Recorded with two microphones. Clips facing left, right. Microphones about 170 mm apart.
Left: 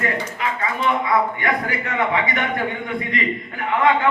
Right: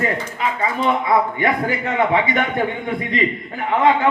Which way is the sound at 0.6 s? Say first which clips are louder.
Right 2 dB; 25° right (ahead or behind).